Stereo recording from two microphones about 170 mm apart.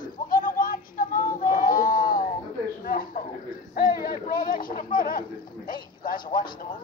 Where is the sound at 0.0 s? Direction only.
50° left (ahead or behind).